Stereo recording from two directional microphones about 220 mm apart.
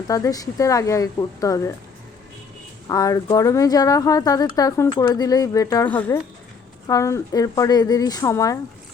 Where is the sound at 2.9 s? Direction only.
15° left (ahead or behind).